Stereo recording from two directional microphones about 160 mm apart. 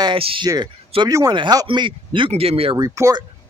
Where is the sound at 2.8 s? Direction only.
20° right (ahead or behind).